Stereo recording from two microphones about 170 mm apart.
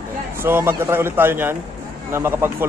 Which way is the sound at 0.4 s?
15° right (ahead or behind).